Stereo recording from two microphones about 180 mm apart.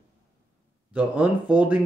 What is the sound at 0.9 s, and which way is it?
Speech, 10° right (ahead or behind).